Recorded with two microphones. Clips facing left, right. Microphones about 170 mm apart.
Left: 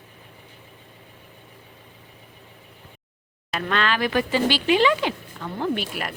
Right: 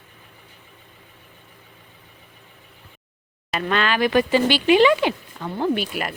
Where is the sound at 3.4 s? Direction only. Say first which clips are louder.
Right 2 dB; 5° right (ahead or behind).